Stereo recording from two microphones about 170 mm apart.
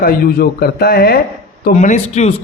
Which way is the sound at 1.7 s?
45° left (ahead or behind).